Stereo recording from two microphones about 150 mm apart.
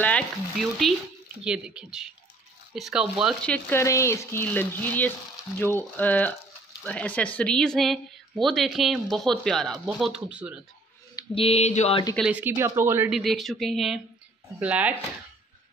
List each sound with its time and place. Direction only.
0.0 s a woman's voice: 5° left (ahead or behind)
3.4 s speech: 10° left (ahead or behind)
3.8 s a woman's voice: 20° left (ahead or behind); by 10.6 s 5° right (ahead or behind)
11.3 s a sound: 40° left (ahead or behind)
12.3 s speech: 10° right (ahead or behind)
13.1 s a woman's voice: centre (ahead or behind)